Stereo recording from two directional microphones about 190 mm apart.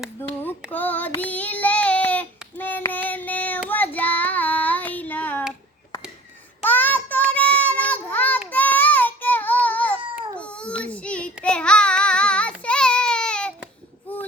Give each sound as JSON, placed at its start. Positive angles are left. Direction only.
{"t": 0.2, "sound": "child singing", "side_deg": 10}
{"t": 6.7, "sound": "child singing", "side_deg": 10}
{"t": 7.3, "sound": "a sound", "side_deg": 10}
{"t": 8.4, "sound": "child singing", "side_deg": 10}
{"t": 10.3, "sound": "baby cry", "side_deg": 5}
{"t": 10.8, "sound": "child singing", "side_deg": 5}